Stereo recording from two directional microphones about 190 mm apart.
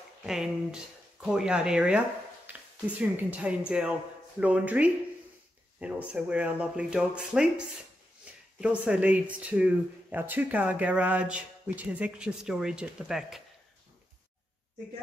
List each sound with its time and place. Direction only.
0.2 s speech: 5° right (ahead or behind)